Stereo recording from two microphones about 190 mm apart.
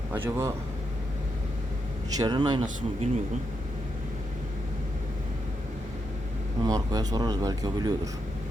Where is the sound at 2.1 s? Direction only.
20° right (ahead or behind).